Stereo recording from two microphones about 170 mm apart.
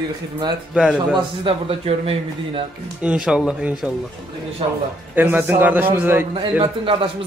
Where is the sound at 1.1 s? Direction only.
30° right (ahead or behind).